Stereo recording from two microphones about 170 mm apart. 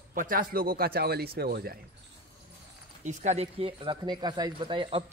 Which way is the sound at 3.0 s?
40° right (ahead or behind).